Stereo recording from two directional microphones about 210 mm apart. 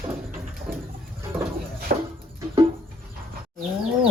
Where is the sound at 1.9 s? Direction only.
45° right (ahead or behind).